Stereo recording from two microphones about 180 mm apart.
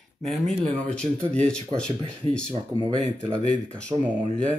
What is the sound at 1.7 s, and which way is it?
Speech, 25° right (ahead or behind).